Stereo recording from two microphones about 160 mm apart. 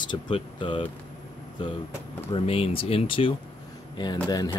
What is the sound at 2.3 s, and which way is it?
Speech, 35° left (ahead or behind).